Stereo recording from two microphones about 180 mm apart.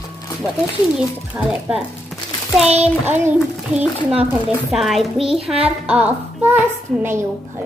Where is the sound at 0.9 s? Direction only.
5° right (ahead or behind).